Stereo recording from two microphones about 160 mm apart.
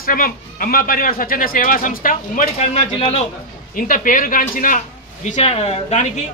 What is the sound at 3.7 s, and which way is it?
A man's voice, 60° left (ahead or behind).